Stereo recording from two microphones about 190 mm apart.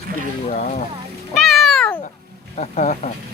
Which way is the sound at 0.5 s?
40° left (ahead or behind).